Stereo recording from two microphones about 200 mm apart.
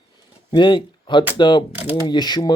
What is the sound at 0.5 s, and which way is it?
Speech, 25° left (ahead or behind).